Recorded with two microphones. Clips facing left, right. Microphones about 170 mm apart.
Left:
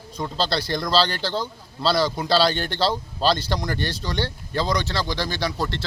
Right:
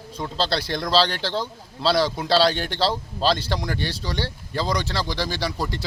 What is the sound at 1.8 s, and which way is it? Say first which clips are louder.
Speech: right 1 dB; centre (ahead or behind).